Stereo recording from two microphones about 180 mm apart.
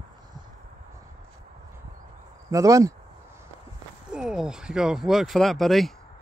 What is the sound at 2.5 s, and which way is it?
Speech, 20° right (ahead or behind).